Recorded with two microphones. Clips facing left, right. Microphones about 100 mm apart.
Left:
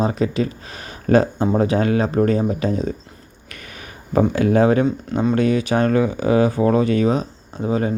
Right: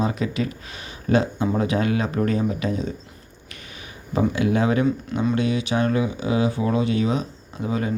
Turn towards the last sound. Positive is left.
turn(degrees=35)  # may be behind; listen again after turning